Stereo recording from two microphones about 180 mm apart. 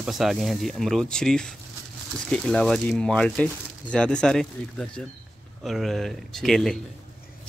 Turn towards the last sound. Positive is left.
turn(degrees=0)  # may be behind; listen again after turning